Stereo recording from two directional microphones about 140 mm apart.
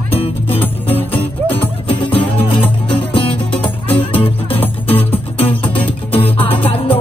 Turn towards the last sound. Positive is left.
turn(degrees=40)  # may be behind; listen again after turning